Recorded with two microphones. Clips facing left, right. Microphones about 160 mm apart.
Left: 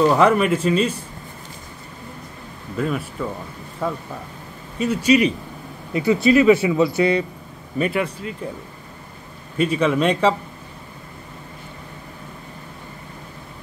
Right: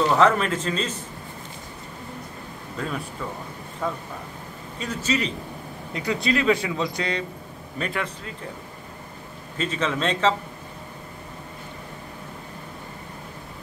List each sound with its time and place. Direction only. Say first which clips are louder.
0.1 s speech: left 4 dB; 10° left (ahead or behind)
2.8 s speech: left 8 dB; 5° left (ahead or behind)
4.7 s speech: left 9 dB; 10° left (ahead or behind)
9.6 s speech: left 7 dB; 10° left (ahead or behind)